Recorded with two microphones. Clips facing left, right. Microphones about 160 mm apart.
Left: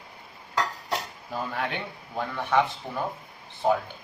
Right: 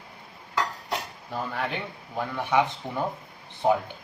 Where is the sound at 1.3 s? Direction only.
Centre (ahead or behind).